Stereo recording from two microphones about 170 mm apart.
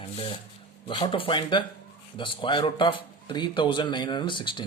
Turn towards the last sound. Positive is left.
turn(degrees=30)  # may be behind; listen again after turning